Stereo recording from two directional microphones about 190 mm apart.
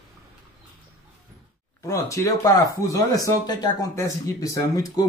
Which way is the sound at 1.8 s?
15° left (ahead or behind).